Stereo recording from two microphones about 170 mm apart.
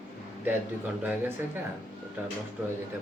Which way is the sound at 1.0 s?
10° right (ahead or behind).